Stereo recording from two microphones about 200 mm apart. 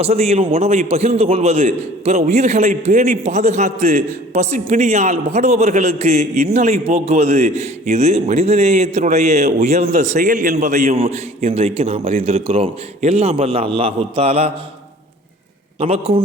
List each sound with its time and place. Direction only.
0.0 s a man's voice: 30° right (ahead or behind)
15.8 s a man's voice: 30° right (ahead or behind)